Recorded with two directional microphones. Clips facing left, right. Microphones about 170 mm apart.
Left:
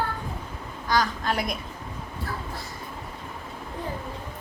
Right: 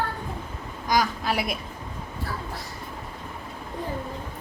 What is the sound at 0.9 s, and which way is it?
Speech, 10° right (ahead or behind).